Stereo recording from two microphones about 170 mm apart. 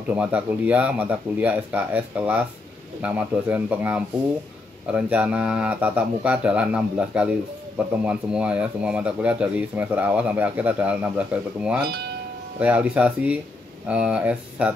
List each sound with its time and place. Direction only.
0.1 s speech: 10° right (ahead or behind)